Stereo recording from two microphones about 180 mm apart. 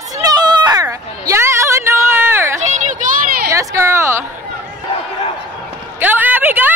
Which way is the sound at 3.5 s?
15° right (ahead or behind).